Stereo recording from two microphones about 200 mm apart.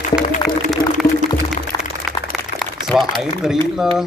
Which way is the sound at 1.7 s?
20° left (ahead or behind).